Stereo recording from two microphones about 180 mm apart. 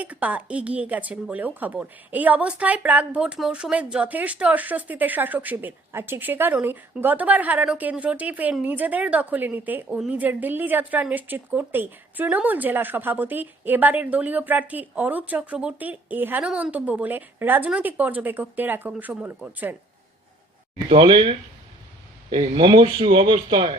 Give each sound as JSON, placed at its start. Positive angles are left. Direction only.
{"t": 0.0, "sound": "speech", "side_deg": -10}
{"t": 20.9, "sound": "speech", "side_deg": -30}